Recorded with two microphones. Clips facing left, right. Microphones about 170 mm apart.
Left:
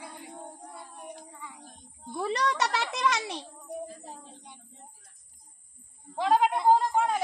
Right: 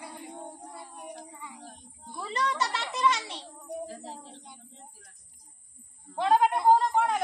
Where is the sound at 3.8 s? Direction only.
80° right.